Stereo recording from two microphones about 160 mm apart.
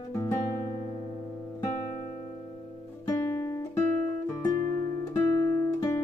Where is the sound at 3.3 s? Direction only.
20° left (ahead or behind).